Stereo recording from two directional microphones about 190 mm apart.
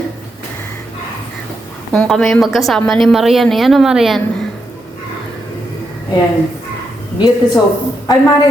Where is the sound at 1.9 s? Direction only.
Centre (ahead or behind).